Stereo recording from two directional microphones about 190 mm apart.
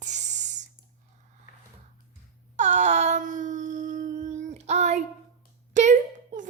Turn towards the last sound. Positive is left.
turn(degrees=-40)  # may be behind; listen again after turning